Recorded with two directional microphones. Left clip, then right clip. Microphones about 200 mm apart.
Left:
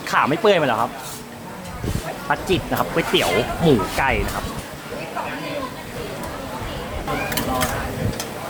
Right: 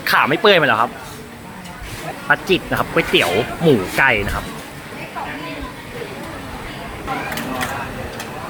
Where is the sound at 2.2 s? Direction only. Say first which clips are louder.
Right 5 dB; 15° right (ahead or behind).